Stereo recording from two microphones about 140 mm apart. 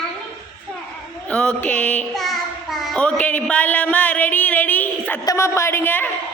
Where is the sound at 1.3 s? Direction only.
10° left (ahead or behind).